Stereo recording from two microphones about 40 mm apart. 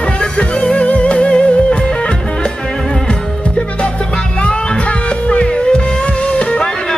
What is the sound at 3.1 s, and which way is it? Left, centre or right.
Music, left.